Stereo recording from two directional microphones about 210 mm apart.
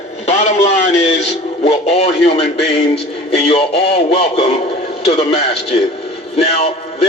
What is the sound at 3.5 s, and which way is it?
A man's voice, 30° left (ahead or behind).